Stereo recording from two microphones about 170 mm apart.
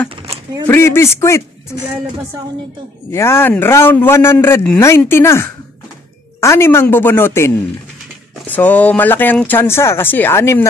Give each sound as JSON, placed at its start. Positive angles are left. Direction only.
{"t": 0.1, "sound": "a sound", "side_deg": -30}
{"t": 0.7, "sound": "a man's voice", "side_deg": 15}
{"t": 3.1, "sound": "a man's voice", "side_deg": 15}